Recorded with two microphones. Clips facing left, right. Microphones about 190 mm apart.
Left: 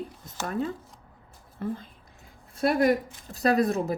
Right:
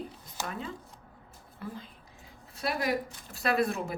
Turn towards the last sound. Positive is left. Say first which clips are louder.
# left 5 dB
turn(degrees=40)  # may be behind; listen again after turning